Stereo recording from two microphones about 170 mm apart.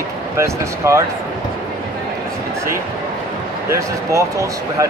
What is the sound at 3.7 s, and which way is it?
Speech, 15° right (ahead or behind).